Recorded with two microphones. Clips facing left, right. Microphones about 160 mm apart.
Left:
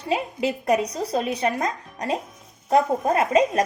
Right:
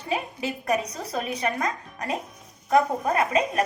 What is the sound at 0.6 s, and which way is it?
A woman's voice, 35° left (ahead or behind).